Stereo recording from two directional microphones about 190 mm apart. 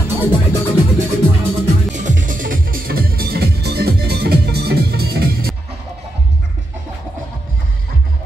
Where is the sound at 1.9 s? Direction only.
40° right (ahead or behind).